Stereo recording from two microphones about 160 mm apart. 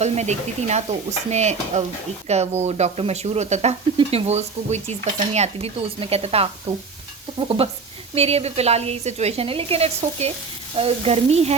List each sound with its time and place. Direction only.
0.0 s a woman's voice: 45° right (ahead or behind)